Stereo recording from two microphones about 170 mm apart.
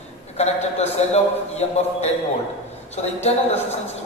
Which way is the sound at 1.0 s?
40° left (ahead or behind).